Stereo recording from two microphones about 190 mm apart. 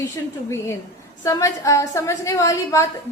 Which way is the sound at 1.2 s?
15° left (ahead or behind).